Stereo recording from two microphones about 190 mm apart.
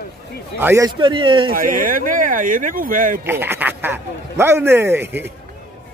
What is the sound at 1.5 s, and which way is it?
Speech, 45° right (ahead or behind).